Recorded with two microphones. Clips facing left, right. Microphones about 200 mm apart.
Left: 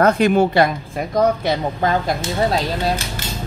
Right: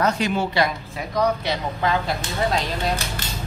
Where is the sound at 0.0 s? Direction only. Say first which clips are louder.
Left 8 dB; 55° left (ahead or behind).